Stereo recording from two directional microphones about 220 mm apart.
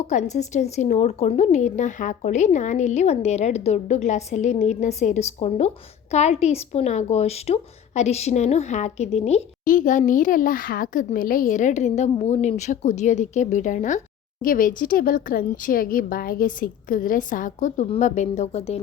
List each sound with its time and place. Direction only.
0.1 s speech: 30° left (ahead or behind)